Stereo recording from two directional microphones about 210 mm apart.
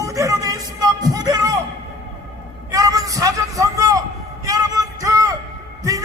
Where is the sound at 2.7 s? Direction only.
15° right (ahead or behind).